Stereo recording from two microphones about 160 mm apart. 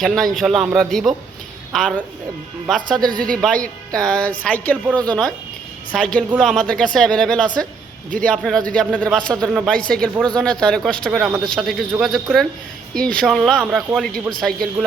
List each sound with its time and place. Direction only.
0.0 s speech: centre (ahead or behind)
5.9 s speech: 5° left (ahead or behind)